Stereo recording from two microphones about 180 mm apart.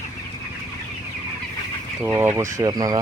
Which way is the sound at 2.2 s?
15° right (ahead or behind).